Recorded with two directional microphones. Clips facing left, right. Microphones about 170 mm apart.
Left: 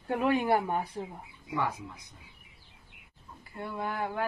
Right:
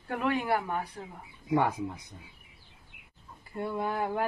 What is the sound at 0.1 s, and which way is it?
Speech, 20° left (ahead or behind).